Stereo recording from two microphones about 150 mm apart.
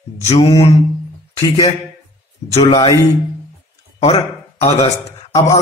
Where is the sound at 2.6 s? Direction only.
30° left (ahead or behind).